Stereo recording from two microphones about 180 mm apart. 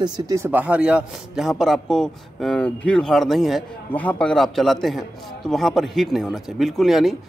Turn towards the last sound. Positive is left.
turn(degrees=0)  # may be behind; listen again after turning